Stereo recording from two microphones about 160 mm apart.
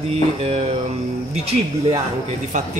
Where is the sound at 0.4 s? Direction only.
40° right (ahead or behind).